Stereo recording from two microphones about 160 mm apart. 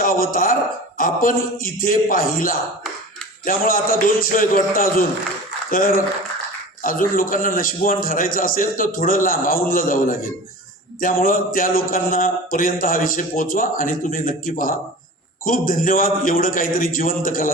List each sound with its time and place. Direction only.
0.0 s a man's voice: 60° left (ahead or behind)